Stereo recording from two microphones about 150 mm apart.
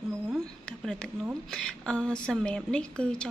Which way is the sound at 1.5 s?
5° left (ahead or behind).